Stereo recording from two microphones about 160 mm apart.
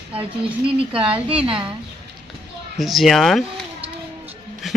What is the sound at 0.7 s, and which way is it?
Speech, 35° right (ahead or behind).